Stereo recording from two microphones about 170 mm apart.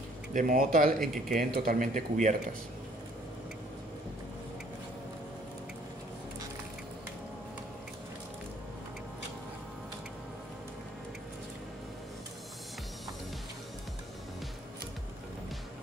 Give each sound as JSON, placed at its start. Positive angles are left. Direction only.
{"t": 0.3, "sound": "speech", "side_deg": -50}
{"t": 0.9, "sound": "speech", "side_deg": 0}
{"t": 1.5, "sound": "speech", "side_deg": -60}